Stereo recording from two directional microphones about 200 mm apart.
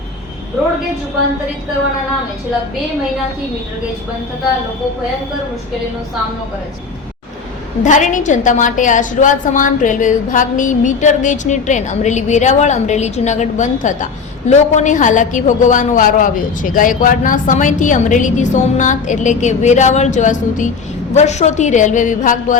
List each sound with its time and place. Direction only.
7.9 s a woman's voice: 40° left (ahead or behind)